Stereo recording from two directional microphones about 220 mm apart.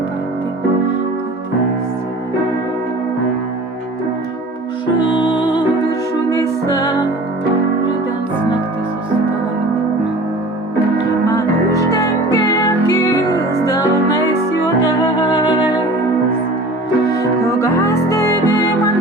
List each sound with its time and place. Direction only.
5.0 s music: 20° left (ahead or behind)
10.9 s music: 15° left (ahead or behind)
15.2 s music: 20° left (ahead or behind)
17.2 s music: 15° left (ahead or behind)